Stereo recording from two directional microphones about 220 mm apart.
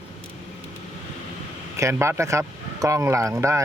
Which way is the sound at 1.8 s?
10° right (ahead or behind).